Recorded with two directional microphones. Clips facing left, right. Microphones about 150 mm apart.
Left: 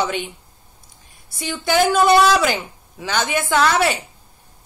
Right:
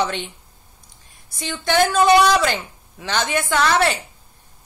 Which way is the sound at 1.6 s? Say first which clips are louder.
Even; 10° left (ahead or behind).